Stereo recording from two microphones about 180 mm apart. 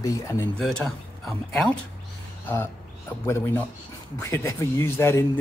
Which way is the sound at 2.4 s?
10° left (ahead or behind).